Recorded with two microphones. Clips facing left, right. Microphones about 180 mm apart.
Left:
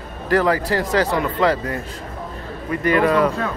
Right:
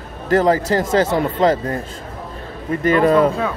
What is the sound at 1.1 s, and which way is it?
Speech, 45° right (ahead or behind).